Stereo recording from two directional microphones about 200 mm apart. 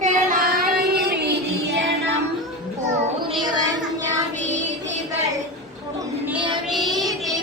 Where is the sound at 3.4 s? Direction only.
20° right (ahead or behind).